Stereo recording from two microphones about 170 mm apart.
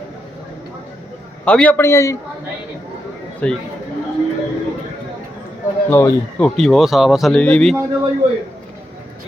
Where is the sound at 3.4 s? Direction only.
5° left (ahead or behind).